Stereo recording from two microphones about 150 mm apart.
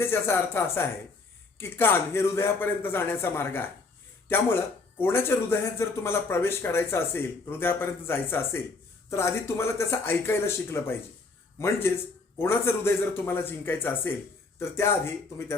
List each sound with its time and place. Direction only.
0.0 s speech: 15° left (ahead or behind)
4.9 s speech: 15° left (ahead or behind)